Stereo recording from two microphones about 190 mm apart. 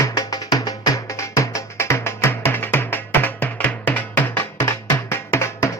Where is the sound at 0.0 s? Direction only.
20° left (ahead or behind).